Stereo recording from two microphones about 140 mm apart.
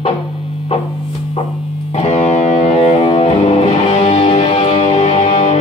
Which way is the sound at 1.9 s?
50° left (ahead or behind).